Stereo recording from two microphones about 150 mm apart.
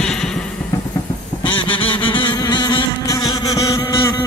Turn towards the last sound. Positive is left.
turn(degrees=20)  # may be behind; listen again after turning